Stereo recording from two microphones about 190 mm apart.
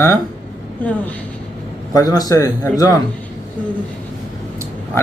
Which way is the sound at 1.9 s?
20° left (ahead or behind).